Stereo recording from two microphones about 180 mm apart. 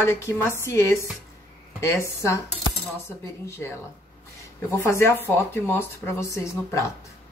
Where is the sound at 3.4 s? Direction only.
15° left (ahead or behind).